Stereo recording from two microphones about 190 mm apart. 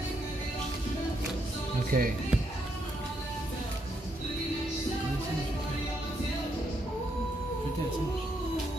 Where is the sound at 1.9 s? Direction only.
50° right (ahead or behind).